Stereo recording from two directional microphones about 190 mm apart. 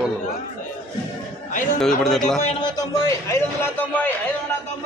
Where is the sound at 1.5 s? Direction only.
45° left (ahead or behind).